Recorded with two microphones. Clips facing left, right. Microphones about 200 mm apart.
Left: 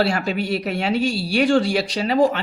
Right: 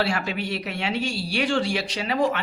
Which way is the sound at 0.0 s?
40° left (ahead or behind).